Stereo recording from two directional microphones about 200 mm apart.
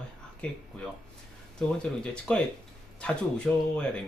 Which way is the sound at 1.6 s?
5° left (ahead or behind).